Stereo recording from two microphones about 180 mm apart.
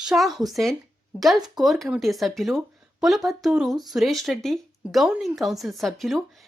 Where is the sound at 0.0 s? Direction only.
Centre (ahead or behind).